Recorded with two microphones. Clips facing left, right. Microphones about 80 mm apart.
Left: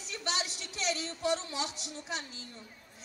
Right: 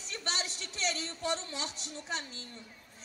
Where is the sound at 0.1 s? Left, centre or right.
Right.